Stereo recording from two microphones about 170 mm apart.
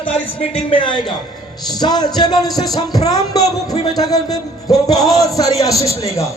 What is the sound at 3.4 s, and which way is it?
A man's voice, 20° left (ahead or behind).